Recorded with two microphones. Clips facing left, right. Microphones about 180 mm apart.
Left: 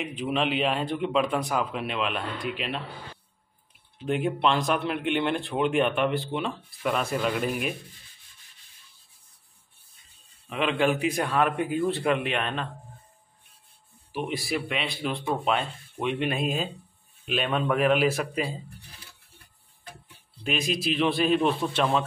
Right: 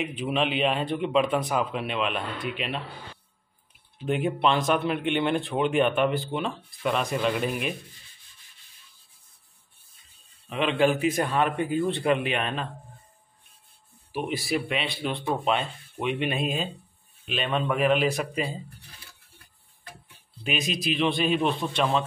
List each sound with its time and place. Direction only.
0.0 s speech: centre (ahead or behind)
4.0 s speech: centre (ahead or behind)
10.5 s speech: centre (ahead or behind)
14.1 s speech: centre (ahead or behind)
20.4 s speech: centre (ahead or behind)